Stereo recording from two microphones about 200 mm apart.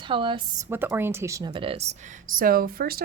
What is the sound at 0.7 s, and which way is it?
Speech, 10° right (ahead or behind).